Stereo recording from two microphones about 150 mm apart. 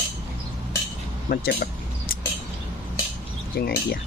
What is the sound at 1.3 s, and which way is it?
Speech, 90° left.